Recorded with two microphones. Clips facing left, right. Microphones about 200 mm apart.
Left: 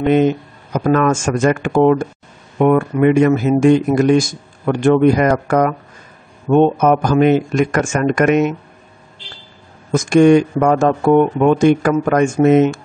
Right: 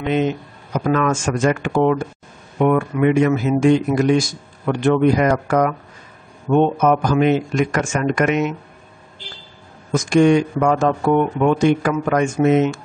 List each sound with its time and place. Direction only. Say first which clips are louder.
0.0 s speech: left 6 dB; 50° left (ahead or behind)
9.9 s speech: left 4 dB; 50° left (ahead or behind)